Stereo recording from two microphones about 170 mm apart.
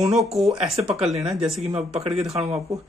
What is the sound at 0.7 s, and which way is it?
Speech, 35° right (ahead or behind).